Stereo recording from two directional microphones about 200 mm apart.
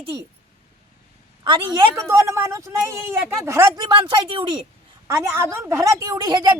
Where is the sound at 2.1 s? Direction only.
10° right (ahead or behind).